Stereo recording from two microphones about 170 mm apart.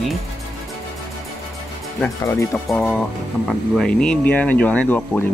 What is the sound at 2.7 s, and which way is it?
Speech, centre (ahead or behind).